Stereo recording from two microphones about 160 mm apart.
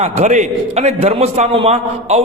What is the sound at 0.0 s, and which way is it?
A man's voice, 45° right (ahead or behind).